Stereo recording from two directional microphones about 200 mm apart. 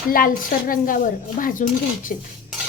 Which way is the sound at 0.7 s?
45° left (ahead or behind).